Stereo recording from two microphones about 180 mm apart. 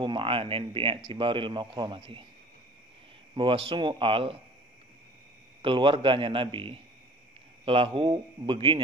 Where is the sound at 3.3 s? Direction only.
30° right (ahead or behind).